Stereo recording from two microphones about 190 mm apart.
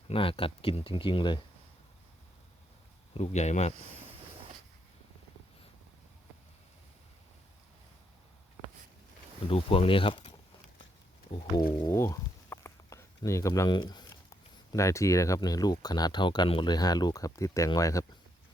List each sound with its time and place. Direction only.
0.1 s speech: 30° left (ahead or behind)
3.2 s speech: 35° left (ahead or behind)
9.5 s speech: 30° left (ahead or behind)
11.7 s speech: 25° left (ahead or behind)
11.9 s speech: 15° left (ahead or behind)